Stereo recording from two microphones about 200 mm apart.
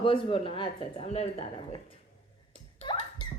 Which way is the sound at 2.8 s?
30° left (ahead or behind).